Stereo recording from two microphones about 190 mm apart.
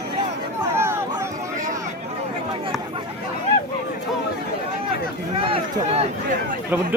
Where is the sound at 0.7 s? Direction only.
15° right (ahead or behind).